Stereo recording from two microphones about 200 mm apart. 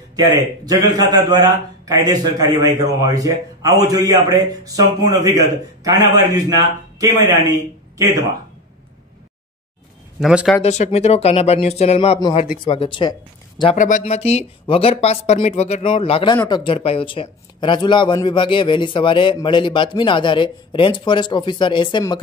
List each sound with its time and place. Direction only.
0.1 s a man's voice: 20° right (ahead or behind)
10.2 s speech: centre (ahead or behind)
10.6 s speech: 35° left (ahead or behind)
13.7 s speech: 40° left (ahead or behind); by 22.2 s 25° left (ahead or behind)